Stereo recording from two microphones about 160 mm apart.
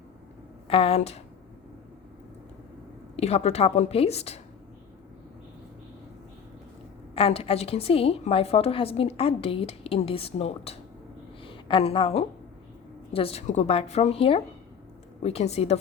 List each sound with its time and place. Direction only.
0.7 s a woman's voice: 40° left (ahead or behind)
3.2 s a woman's voice: 40° left (ahead or behind)
7.2 s a woman's voice: 35° left (ahead or behind)